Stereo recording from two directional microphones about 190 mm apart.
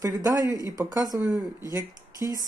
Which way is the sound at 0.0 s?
20° right (ahead or behind).